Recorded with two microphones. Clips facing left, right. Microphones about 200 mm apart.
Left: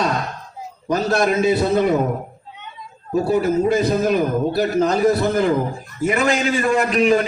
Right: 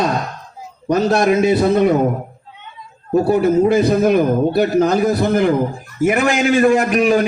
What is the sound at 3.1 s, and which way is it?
A man's voice, 60° right (ahead or behind).